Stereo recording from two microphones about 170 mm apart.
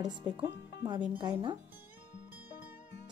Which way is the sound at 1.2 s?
25° right (ahead or behind).